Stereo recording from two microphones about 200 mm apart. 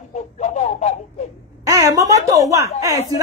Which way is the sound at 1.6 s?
15° right (ahead or behind).